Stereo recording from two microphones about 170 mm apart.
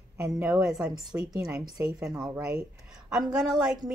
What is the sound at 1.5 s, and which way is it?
A woman's voice, 20° right (ahead or behind).